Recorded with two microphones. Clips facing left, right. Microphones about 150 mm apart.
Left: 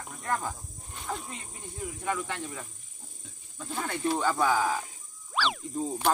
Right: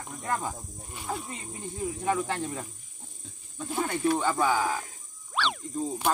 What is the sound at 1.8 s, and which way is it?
Speech, 35° right (ahead or behind).